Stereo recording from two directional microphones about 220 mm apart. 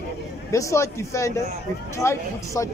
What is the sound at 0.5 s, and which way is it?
Speech, 15° left (ahead or behind).